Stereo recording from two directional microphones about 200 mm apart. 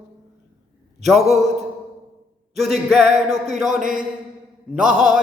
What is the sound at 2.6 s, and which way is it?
Speech, centre (ahead or behind).